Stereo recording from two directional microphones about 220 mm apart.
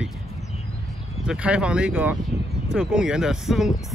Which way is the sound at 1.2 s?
5° right (ahead or behind).